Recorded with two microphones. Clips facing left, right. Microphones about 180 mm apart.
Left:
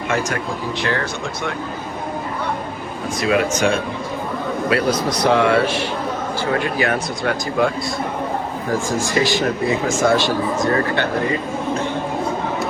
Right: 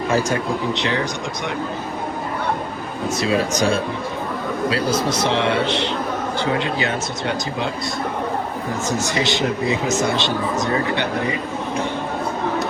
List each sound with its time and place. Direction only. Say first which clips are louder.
3.2 s speech: left 2 dB; 35° right (ahead or behind)
4.7 s a man's voice: left 3 dB; 25° right (ahead or behind)
8.9 s a man's voice: left 1 dB; 20° right (ahead or behind)